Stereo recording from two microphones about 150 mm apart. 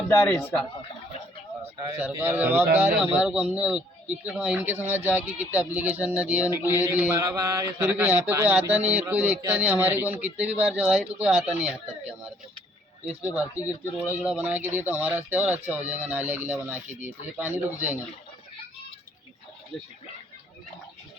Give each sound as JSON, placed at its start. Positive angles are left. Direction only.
{"t": 0.1, "sound": "a man's voice", "side_deg": 15}
{"t": 2.1, "sound": "speech", "side_deg": -15}
{"t": 7.2, "sound": "mantra", "side_deg": -20}
{"t": 8.3, "sound": "speech", "side_deg": -10}
{"t": 13.5, "sound": "speech", "side_deg": 20}
{"t": 14.0, "sound": "speech", "side_deg": -10}